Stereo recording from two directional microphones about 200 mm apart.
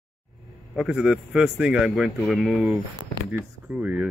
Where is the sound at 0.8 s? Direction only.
5° right (ahead or behind).